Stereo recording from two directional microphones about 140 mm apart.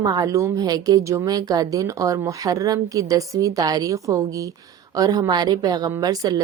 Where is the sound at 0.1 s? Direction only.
25° right (ahead or behind).